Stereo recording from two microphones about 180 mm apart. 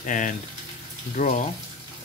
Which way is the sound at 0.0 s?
45° left (ahead or behind).